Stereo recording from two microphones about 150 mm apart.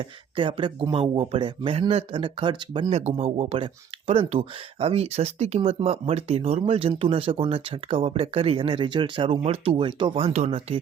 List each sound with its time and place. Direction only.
0.0 s speech: 35° right (ahead or behind)
2.9 s speech: 45° right (ahead or behind)